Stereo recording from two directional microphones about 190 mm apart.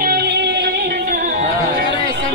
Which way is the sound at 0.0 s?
55° right (ahead or behind).